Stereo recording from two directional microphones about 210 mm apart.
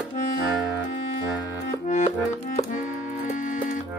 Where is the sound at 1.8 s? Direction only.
35° left (ahead or behind).